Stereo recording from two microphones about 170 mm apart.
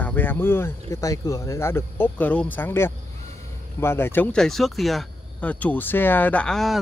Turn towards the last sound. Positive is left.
turn(degrees=0)  # may be behind; listen again after turning